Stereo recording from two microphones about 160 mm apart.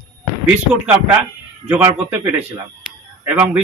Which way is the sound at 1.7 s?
10° right (ahead or behind).